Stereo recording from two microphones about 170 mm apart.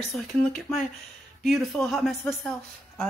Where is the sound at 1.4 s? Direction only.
Centre (ahead or behind).